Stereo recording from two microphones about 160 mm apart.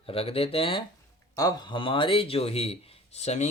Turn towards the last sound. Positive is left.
turn(degrees=45)  # may be behind; listen again after turning